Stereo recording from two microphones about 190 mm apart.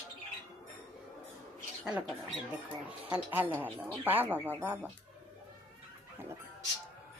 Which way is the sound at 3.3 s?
10° right (ahead or behind).